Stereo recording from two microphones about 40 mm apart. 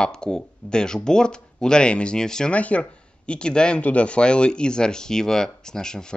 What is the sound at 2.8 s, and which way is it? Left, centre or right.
Speech, left.